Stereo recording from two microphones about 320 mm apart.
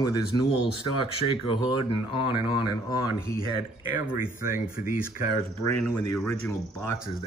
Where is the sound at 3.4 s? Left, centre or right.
Centre.